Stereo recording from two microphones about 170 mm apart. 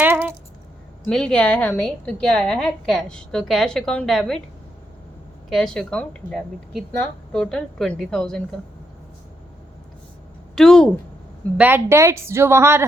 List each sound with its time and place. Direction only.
0.0 s a sound: 10° right (ahead or behind)
1.0 s a woman's voice: 5° left (ahead or behind)
5.5 s a woman's voice: centre (ahead or behind)
10.5 s a woman's voice: 5° left (ahead or behind)
11.5 s speech: 10° right (ahead or behind)